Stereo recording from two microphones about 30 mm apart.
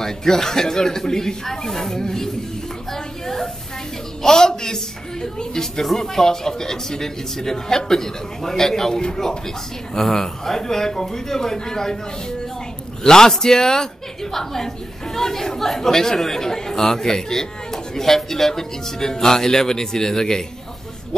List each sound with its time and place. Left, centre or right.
0.0 s a man's voice: centre